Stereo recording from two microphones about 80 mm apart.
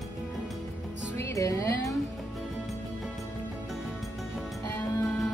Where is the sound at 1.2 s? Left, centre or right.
Left.